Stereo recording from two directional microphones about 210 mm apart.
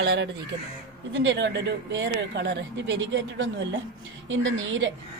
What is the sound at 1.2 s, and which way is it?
Speech, 55° right (ahead or behind).